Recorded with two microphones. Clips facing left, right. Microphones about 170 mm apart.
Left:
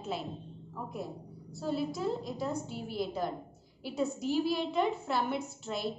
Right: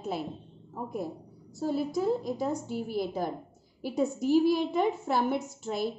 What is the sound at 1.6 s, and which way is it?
Speech, 50° right (ahead or behind).